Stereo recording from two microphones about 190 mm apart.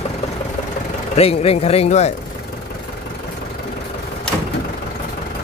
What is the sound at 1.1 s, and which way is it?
Speech, 35° left (ahead or behind).